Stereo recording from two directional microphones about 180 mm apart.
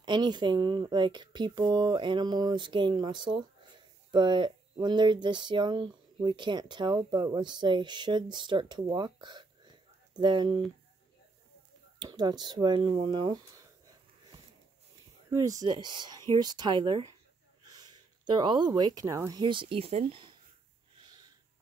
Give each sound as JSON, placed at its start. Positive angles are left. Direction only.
{"t": 0.0, "sound": "speech", "side_deg": -25}
{"t": 12.0, "sound": "speech", "side_deg": -25}
{"t": 15.3, "sound": "speech", "side_deg": -20}
{"t": 21.0, "sound": "a sound", "side_deg": -25}